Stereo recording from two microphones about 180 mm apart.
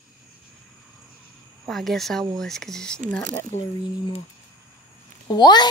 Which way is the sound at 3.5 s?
35° left (ahead or behind).